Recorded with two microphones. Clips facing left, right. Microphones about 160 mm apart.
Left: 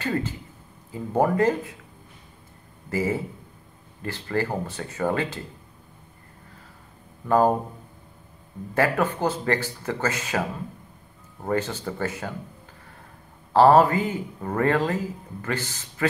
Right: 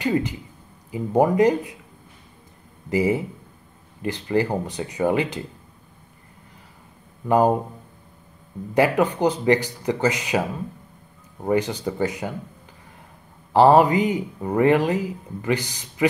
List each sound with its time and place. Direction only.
0.0 s speech: 15° right (ahead or behind)
2.9 s speech: 15° right (ahead or behind)
7.2 s speech: 15° right (ahead or behind)
8.7 s speech: 15° right (ahead or behind)
11.4 s speech: 15° right (ahead or behind)
13.5 s speech: 15° right (ahead or behind)